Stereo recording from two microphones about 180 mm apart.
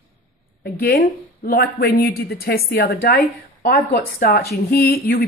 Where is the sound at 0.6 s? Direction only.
60° left (ahead or behind).